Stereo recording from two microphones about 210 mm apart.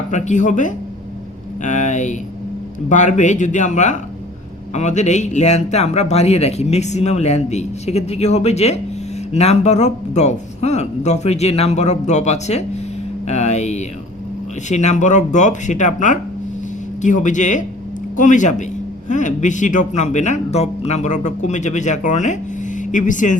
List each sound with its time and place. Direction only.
0.1 s a man's voice: 35° left (ahead or behind)